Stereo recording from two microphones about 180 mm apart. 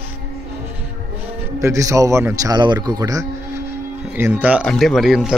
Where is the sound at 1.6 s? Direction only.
15° right (ahead or behind).